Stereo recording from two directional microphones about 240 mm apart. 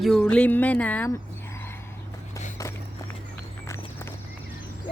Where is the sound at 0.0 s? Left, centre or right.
Centre.